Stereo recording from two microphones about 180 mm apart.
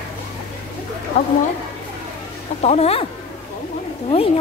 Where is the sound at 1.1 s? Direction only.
35° left (ahead or behind).